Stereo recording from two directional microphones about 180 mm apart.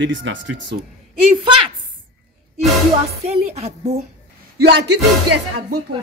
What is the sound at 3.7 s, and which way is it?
Speech, 35° right (ahead or behind).